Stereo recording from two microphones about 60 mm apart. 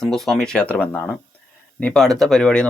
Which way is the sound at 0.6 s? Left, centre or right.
Left.